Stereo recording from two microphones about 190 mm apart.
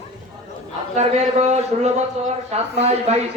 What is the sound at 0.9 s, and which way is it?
Speech, 35° right (ahead or behind).